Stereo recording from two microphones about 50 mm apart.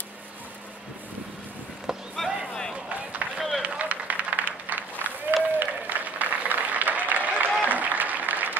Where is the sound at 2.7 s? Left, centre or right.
Right.